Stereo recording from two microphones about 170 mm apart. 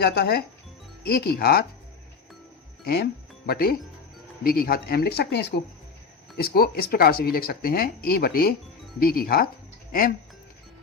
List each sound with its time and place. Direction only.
0.0 s speech: 65° left (ahead or behind)
2.8 s speech: 65° left (ahead or behind)